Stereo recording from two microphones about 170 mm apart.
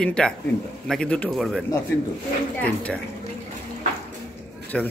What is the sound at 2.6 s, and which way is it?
Speech, 5° left (ahead or behind).